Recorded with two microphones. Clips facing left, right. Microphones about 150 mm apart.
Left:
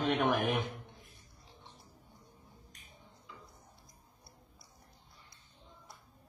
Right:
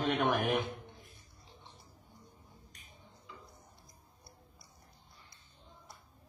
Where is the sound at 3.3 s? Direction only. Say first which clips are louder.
Right 1 dB; centre (ahead or behind).